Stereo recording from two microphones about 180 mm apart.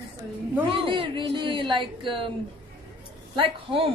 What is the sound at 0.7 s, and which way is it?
A woman's voice, 30° right (ahead or behind).